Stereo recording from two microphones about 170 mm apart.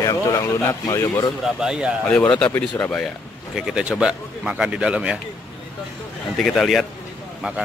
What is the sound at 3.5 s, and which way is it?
A man's voice, 5° right (ahead or behind).